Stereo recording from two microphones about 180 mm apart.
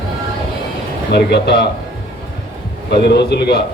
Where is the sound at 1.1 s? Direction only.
65° left (ahead or behind).